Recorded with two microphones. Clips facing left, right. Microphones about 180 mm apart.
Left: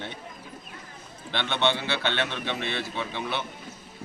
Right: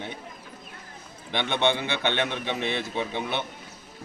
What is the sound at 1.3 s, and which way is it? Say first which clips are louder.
A man's voice: right 2 dB; 15° right (ahead or behind).